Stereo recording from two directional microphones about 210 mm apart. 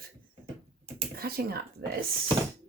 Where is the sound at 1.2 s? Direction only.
45° right (ahead or behind).